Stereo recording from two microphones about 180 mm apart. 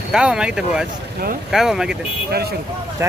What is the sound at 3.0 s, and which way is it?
Speech, 15° right (ahead or behind).